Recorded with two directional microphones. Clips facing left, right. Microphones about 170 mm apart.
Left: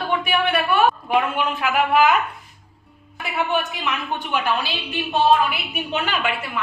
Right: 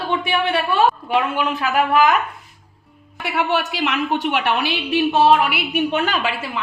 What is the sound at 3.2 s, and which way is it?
A woman's voice, 75° right (ahead or behind).